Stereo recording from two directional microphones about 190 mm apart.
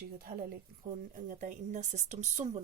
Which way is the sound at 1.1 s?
40° right (ahead or behind).